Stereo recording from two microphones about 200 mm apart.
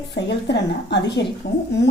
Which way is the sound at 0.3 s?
60° left (ahead or behind).